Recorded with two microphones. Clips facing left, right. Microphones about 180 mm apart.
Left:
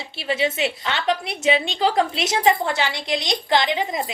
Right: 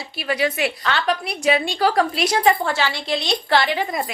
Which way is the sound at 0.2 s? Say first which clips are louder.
Right 1 dB; 25° left (ahead or behind).